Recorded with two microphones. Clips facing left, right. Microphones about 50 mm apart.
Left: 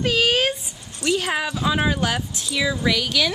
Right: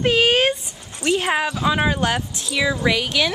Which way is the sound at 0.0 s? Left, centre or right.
Right.